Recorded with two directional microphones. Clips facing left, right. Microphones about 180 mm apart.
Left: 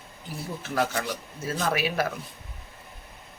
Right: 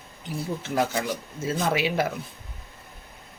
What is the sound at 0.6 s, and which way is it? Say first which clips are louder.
Speech: right 1 dB; 20° right (ahead or behind).